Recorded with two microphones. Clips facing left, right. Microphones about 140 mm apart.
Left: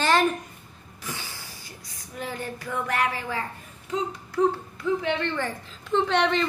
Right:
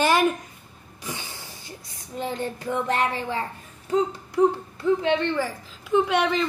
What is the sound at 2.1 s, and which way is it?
A child's voice, 25° right (ahead or behind).